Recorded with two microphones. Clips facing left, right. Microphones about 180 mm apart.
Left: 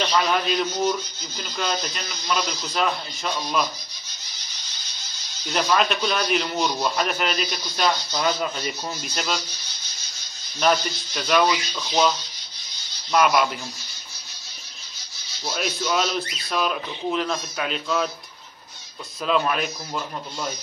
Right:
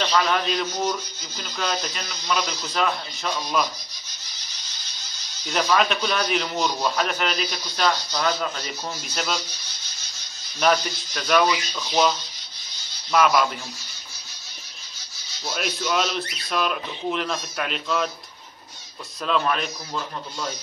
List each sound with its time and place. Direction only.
0.0 s a man's voice: 5° left (ahead or behind)
5.5 s a man's voice: centre (ahead or behind)
10.6 s a man's voice: 5° left (ahead or behind)
13.1 s a man's voice: 5° left (ahead or behind)
15.4 s a man's voice: centre (ahead or behind)
19.2 s speech: 5° left (ahead or behind)